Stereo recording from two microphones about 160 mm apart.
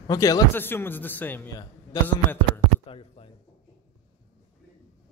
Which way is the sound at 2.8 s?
35° left (ahead or behind).